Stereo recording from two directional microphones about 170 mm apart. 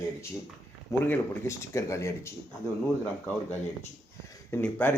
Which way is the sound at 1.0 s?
15° left (ahead or behind).